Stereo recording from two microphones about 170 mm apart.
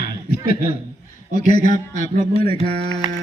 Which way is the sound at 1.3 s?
50° left (ahead or behind).